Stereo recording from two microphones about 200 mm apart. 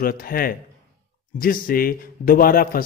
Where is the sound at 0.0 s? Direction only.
45° left (ahead or behind).